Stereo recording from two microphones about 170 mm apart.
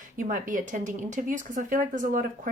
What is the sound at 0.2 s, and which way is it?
Speech, 50° right (ahead or behind).